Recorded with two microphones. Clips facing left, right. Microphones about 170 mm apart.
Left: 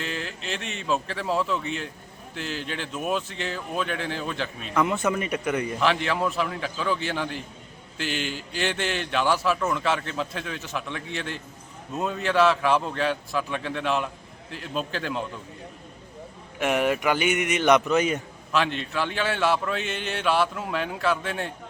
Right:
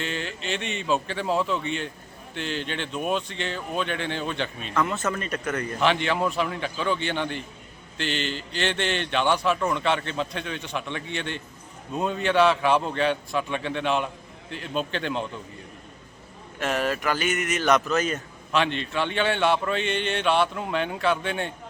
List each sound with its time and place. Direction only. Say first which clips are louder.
0.0 s a man's voice: right 2 dB; centre (ahead or behind)
16.6 s speech: left 3 dB; 15° left (ahead or behind)
18.5 s a man's voice: right 1 dB; centre (ahead or behind)